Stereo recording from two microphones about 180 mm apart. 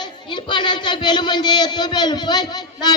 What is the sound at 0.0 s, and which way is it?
Speech, 25° left (ahead or behind).